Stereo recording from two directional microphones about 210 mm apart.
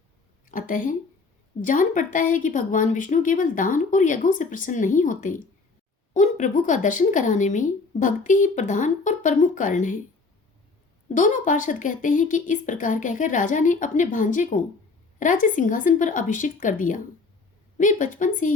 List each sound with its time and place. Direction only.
0.4 s a sound: 40° left (ahead or behind)
1.6 s a woman's voice: 40° left (ahead or behind)
11.1 s a woman's voice: 40° left (ahead or behind)